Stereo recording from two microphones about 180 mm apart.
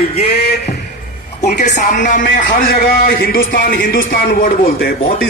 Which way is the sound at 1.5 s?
45° left (ahead or behind).